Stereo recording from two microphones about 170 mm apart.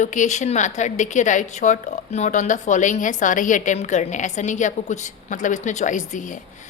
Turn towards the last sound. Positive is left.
turn(degrees=50)  # may be behind; listen again after turning